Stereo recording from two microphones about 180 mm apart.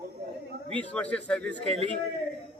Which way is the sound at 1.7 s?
35° right (ahead or behind).